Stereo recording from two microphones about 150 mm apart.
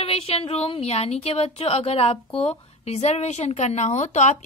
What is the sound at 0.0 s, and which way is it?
A woman's voice, 40° left (ahead or behind).